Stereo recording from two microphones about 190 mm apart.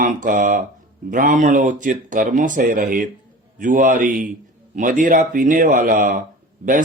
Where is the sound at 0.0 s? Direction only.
45° right (ahead or behind).